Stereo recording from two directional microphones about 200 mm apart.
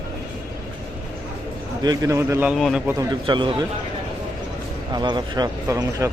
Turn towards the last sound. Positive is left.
turn(degrees=-15)  # may be behind; listen again after turning